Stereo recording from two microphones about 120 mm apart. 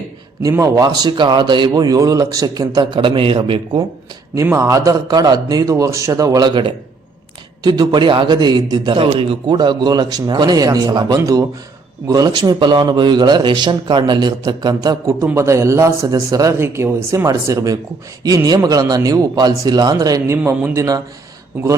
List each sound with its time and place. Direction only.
0.5 s a man's voice: 30° right (ahead or behind)
2.8 s a man's voice: 40° right (ahead or behind)
4.5 s a man's voice: 25° right (ahead or behind)
15.2 s a man's voice: 20° right (ahead or behind)